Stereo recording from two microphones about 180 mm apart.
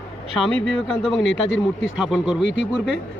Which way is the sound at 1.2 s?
90° left.